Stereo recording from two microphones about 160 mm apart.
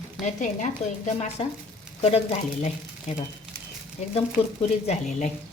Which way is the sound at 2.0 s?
40° left (ahead or behind).